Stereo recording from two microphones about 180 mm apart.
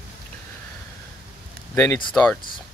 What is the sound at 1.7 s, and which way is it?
Speech, 15° left (ahead or behind).